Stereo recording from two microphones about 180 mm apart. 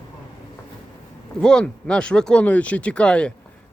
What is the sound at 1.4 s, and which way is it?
Speech, 5° left (ahead or behind).